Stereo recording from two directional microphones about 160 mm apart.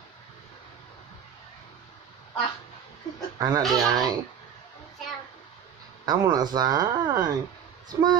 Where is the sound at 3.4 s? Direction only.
25° right (ahead or behind).